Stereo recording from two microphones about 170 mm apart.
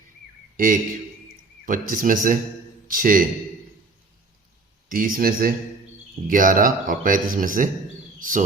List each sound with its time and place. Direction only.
0.5 s a man's voice: 55° right (ahead or behind)
4.9 s speech: 55° right (ahead or behind)